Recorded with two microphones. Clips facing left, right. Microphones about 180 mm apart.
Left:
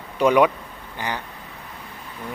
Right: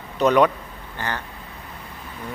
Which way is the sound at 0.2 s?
10° left (ahead or behind).